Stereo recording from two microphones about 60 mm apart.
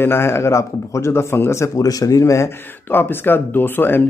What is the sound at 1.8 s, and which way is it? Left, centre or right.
Speech, left.